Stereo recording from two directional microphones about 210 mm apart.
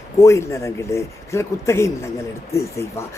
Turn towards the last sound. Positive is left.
turn(degrees=15)  # may be behind; listen again after turning